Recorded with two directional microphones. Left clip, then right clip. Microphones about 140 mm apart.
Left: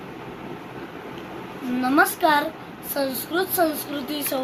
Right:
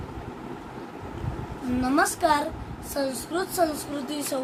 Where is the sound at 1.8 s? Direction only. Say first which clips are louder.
Left 4 dB; 15° right (ahead or behind).